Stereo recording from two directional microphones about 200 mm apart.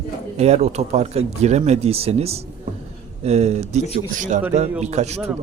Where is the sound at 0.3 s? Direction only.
35° right (ahead or behind).